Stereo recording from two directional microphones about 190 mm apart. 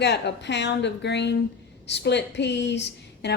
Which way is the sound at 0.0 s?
65° left (ahead or behind).